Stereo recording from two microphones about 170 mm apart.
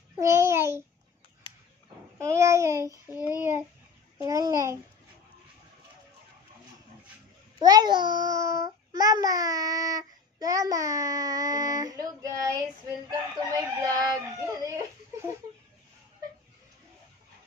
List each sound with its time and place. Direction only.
0.1 s babbling: 15° right (ahead or behind)
2.1 s child singing: 15° right (ahead or behind)
3.2 s child singing: 20° left (ahead or behind)
4.2 s a child's voice: 20° right (ahead or behind)
7.5 s a child's voice: 25° right (ahead or behind)